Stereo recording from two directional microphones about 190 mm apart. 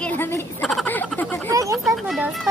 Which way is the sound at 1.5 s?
15° right (ahead or behind).